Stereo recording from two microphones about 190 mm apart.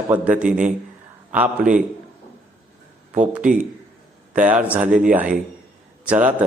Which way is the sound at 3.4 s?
45° right (ahead or behind).